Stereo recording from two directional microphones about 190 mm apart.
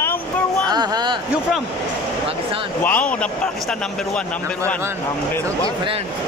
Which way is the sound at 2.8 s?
10° left (ahead or behind).